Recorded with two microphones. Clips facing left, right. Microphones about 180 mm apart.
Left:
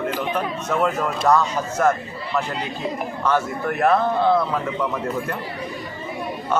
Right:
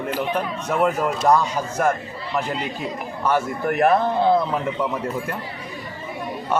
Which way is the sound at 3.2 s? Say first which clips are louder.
Right 1 dB; 15° right (ahead or behind).